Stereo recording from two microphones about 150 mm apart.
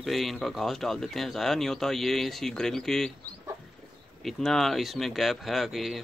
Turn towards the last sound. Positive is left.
turn(degrees=0)  # may be behind; listen again after turning